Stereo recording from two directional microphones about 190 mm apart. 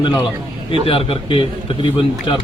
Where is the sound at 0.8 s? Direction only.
30° left (ahead or behind).